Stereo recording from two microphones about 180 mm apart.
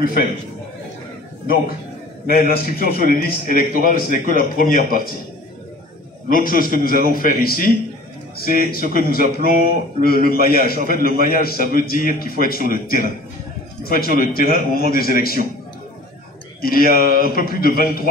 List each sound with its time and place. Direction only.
2.2 s a man's voice: 55° left (ahead or behind)
6.3 s a man's voice: 50° left (ahead or behind)
16.6 s a man's voice: 55° left (ahead or behind)